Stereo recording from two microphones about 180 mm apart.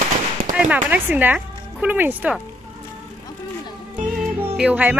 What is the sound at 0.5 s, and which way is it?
Speech, 10° right (ahead or behind).